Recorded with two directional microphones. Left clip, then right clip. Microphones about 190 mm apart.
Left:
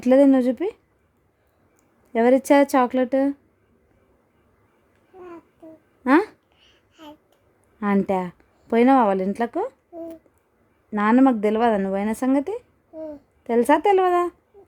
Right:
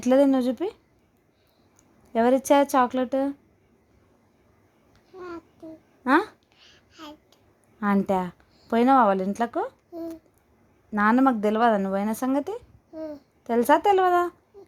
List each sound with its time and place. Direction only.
0.0 s speech: 30° left (ahead or behind)
2.1 s a woman's voice: 30° left (ahead or behind)
6.1 s speech: 30° left (ahead or behind)
6.6 s babbling: 10° left (ahead or behind)
7.8 s a woman's voice: 30° left (ahead or behind)
10.9 s speech: 30° left (ahead or behind)